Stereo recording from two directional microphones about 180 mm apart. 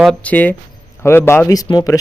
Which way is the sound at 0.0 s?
5° left (ahead or behind).